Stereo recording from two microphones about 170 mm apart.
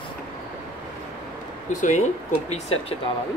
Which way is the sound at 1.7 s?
45° left (ahead or behind).